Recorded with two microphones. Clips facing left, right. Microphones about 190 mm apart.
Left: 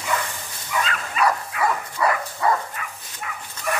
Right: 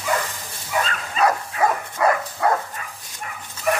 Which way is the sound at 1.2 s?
45° right (ahead or behind).